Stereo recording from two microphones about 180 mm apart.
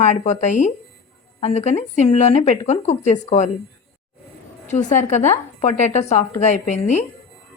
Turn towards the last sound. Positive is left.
turn(degrees=40)  # may be behind; listen again after turning